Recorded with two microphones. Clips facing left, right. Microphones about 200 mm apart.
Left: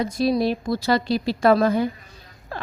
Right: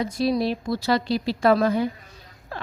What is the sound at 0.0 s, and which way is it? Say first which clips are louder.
A woman's voice: left 2 dB; 45° left (ahead or behind).